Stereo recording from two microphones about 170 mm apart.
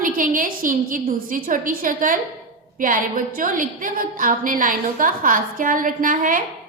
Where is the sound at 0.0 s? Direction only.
55° right (ahead or behind).